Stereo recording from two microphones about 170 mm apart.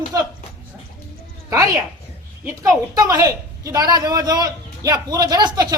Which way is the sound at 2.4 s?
20° right (ahead or behind).